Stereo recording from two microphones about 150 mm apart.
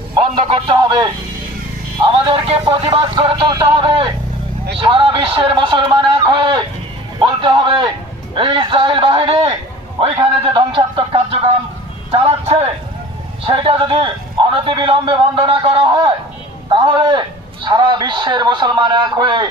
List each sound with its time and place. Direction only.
0.4 s a man's voice: 40° right (ahead or behind)